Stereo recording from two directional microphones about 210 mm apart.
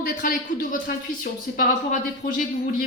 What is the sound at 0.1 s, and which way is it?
Speech, 40° left (ahead or behind).